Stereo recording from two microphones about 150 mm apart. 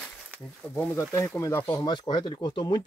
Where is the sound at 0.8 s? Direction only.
15° left (ahead or behind).